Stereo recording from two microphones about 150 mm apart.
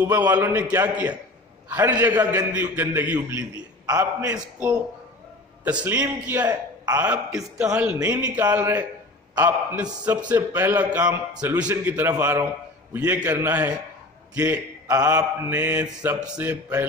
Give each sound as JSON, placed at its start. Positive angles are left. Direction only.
{"t": 0.0, "sound": "a man's voice", "side_deg": -25}
{"t": 0.3, "sound": "a man's voice", "side_deg": -10}
{"t": 3.5, "sound": "a sound", "side_deg": -25}
{"t": 4.3, "sound": "a man's voice", "side_deg": -15}
{"t": 7.5, "sound": "a man's voice", "side_deg": -5}